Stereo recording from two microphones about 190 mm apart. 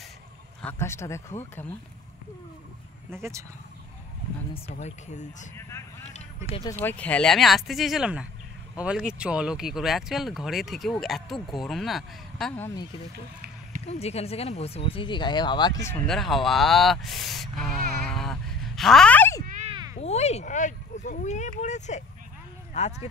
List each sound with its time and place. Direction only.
0.6 s speech: 10° left (ahead or behind)
3.1 s speech: 15° right (ahead or behind)
4.7 s speech: 35° left (ahead or behind)
5.7 s vehicle: 15° left (ahead or behind)
6.8 s speech: 10° left (ahead or behind)
13.8 s speech: 35° left (ahead or behind); by 16.0 s 15° left (ahead or behind)
16.1 s speech: centre (ahead or behind)
19.4 s a sound: 40° right (ahead or behind)
19.7 s a sound: 20° right (ahead or behind)
20.0 s speech: 35° left (ahead or behind)